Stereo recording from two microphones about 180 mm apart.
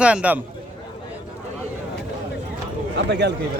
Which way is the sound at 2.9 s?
75° right (ahead or behind).